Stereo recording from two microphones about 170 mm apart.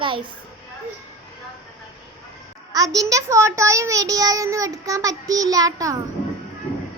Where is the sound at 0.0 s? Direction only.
30° right (ahead or behind).